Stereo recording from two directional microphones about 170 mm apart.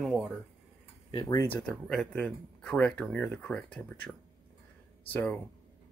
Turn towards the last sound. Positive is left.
turn(degrees=10)  # may be behind; listen again after turning